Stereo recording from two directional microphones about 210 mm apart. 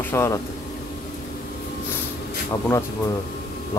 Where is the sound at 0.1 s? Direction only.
10° left (ahead or behind).